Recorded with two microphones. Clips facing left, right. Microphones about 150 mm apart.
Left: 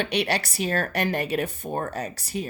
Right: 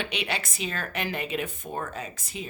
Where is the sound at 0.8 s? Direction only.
45° left (ahead or behind).